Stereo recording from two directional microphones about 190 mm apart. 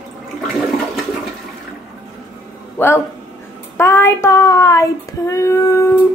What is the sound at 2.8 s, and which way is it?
Speech, 10° left (ahead or behind).